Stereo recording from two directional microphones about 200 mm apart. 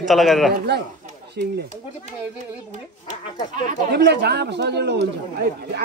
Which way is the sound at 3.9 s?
55° right (ahead or behind).